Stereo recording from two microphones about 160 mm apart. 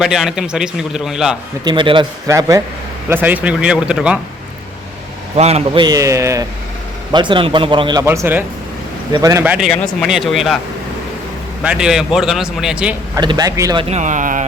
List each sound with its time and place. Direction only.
0.0 s a man's voice: centre (ahead or behind)
1.6 s a man's voice: 30° right (ahead or behind)
2.3 s a man's voice: 20° right (ahead or behind)
5.4 s a man's voice: 40° right (ahead or behind)
5.8 s a man's voice: 20° right (ahead or behind)
7.1 s a man's voice: 30° right (ahead or behind)
8.0 s a man's voice: 15° right (ahead or behind)
9.4 s speech: 10° right (ahead or behind)
9.6 s a man's voice: centre (ahead or behind)
11.6 s a man's voice: 5° right (ahead or behind)
13.1 s a man's voice: 25° right (ahead or behind)
13.9 s speech: 50° right (ahead or behind)